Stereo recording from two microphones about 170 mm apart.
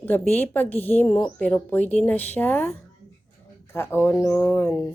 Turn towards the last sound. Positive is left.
turn(degrees=15)  # may be behind; listen again after turning